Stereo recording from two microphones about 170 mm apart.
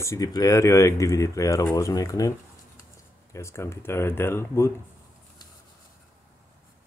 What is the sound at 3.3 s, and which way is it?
Speech, 15° left (ahead or behind).